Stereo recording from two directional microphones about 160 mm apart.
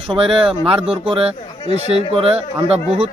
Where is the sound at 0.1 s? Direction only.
35° right (ahead or behind).